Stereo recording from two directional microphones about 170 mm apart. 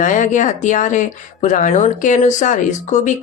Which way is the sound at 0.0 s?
50° left (ahead or behind).